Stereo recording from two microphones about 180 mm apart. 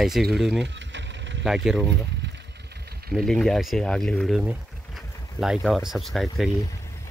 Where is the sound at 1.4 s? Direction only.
5° right (ahead or behind).